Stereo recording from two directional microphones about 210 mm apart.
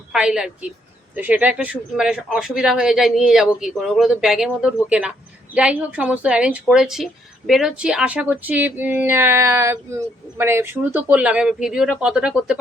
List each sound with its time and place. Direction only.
0.1 s speech: centre (ahead or behind)